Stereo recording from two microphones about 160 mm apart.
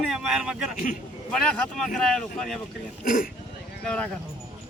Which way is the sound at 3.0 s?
60° left (ahead or behind).